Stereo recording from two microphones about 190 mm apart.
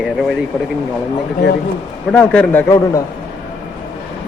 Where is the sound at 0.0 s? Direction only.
5° right (ahead or behind).